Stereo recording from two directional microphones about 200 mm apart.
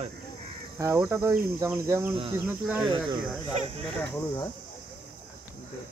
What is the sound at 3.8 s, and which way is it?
Speech, 10° left (ahead or behind).